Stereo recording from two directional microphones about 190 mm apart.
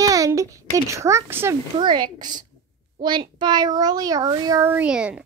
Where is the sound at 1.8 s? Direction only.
25° right (ahead or behind).